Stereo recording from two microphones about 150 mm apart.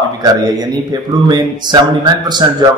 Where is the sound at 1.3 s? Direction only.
30° right (ahead or behind).